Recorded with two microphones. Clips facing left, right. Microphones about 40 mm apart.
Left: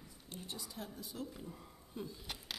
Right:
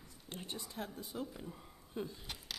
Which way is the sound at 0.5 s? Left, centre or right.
Right.